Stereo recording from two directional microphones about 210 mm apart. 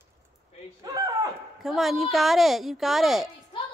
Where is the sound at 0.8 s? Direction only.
15° right (ahead or behind).